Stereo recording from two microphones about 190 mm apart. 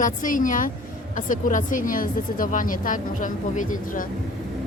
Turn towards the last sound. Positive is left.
turn(degrees=45)  # may be behind; listen again after turning